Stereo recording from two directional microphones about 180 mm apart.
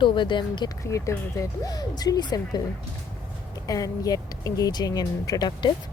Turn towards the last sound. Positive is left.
turn(degrees=25)  # may be behind; listen again after turning